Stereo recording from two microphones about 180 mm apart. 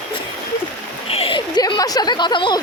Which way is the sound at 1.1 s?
30° left (ahead or behind).